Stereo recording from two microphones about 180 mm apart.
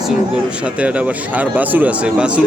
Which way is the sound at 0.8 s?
5° right (ahead or behind).